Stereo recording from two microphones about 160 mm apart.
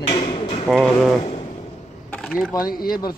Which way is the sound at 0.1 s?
30° left (ahead or behind).